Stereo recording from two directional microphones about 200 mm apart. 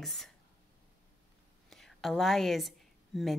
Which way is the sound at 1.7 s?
Centre (ahead or behind).